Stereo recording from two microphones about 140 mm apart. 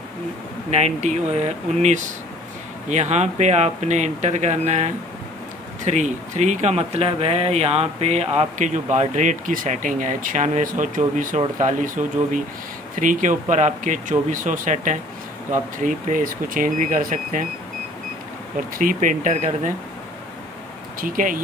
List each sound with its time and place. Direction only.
0.7 s speech: 50° right (ahead or behind)
18.8 s speech: 70° right (ahead or behind)
21.0 s speech: 70° right (ahead or behind)